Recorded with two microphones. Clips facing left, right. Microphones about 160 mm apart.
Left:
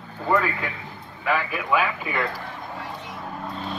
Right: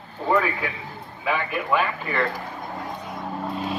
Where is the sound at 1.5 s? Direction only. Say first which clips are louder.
Even; centre (ahead or behind).